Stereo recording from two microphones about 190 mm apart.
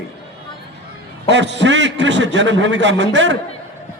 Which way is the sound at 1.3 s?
70° right (ahead or behind).